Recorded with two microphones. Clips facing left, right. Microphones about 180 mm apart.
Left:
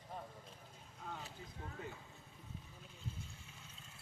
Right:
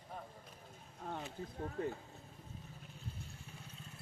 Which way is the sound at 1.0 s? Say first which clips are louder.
Right 6 dB; 45° right (ahead or behind).